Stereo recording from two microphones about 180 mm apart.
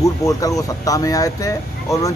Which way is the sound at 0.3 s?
20° left (ahead or behind).